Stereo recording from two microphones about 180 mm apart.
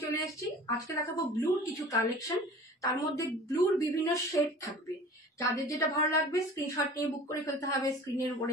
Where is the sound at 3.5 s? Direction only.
20° left (ahead or behind).